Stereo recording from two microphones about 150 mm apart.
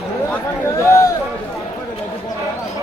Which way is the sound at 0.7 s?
20° left (ahead or behind).